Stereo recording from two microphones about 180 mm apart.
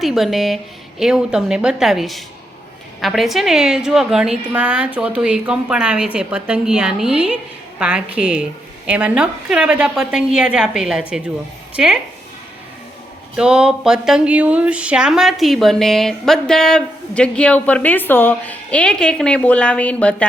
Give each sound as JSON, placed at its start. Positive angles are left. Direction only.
{"t": 0.0, "sound": "speech", "side_deg": 0}
{"t": 13.3, "sound": "speech", "side_deg": -5}